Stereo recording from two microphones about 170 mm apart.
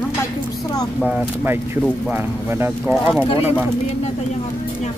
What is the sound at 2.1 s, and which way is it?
Speech, 10° right (ahead or behind).